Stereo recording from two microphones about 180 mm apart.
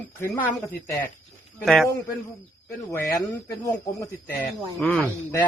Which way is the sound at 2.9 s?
15° left (ahead or behind).